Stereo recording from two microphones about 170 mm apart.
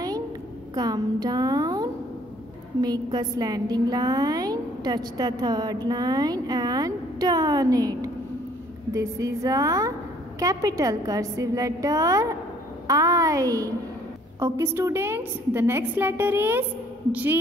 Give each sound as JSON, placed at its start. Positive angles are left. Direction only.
{"t": 0.7, "sound": "a woman's voice", "side_deg": -25}